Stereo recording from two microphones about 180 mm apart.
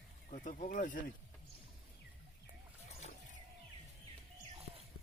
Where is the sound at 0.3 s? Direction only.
45° left (ahead or behind).